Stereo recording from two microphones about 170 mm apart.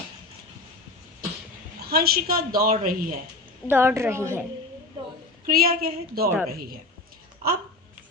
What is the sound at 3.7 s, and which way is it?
Speech, 15° right (ahead or behind).